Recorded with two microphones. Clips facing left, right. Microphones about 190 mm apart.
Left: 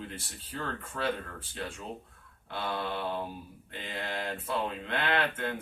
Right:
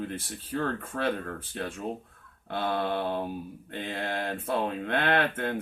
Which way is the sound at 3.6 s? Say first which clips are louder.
Right 4 dB; 55° right (ahead or behind).